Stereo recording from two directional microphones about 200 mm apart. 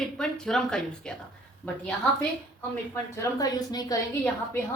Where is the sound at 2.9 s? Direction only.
15° left (ahead or behind).